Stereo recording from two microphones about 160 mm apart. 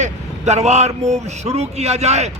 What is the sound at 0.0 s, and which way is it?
A man's voice, 45° right (ahead or behind).